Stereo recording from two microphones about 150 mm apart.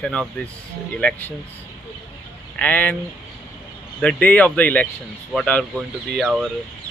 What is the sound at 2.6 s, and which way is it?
Speech, 10° left (ahead or behind).